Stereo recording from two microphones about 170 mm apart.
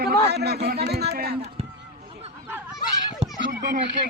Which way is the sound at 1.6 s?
35° right (ahead or behind).